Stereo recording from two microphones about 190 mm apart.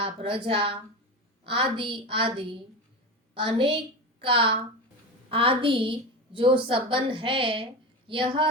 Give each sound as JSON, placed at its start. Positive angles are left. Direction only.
{"t": 0.0, "sound": "a woman's voice", "side_deg": -30}